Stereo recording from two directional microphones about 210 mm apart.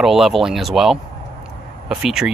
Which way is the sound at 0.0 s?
Centre (ahead or behind).